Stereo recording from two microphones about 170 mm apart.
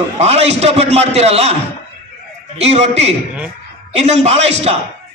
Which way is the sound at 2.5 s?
40° right (ahead or behind).